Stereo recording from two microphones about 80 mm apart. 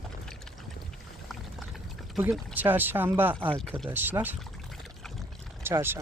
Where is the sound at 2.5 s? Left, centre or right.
Right.